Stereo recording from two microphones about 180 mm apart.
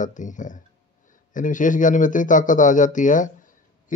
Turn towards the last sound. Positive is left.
turn(degrees=45)  # may be behind; listen again after turning